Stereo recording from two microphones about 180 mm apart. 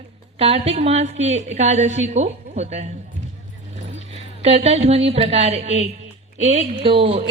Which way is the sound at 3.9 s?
35° right (ahead or behind).